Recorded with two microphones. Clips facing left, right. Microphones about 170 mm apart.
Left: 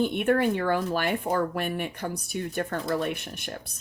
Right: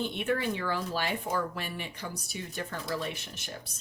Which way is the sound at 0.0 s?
55° left (ahead or behind).